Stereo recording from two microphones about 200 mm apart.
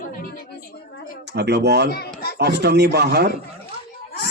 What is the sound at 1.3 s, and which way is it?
Speech, 55° right (ahead or behind).